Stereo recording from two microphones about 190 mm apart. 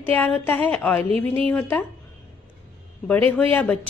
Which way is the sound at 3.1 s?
5° left (ahead or behind).